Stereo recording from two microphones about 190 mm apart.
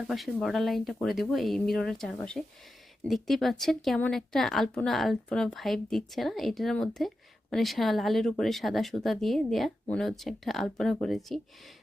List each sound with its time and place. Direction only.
0.0 s speech: centre (ahead or behind)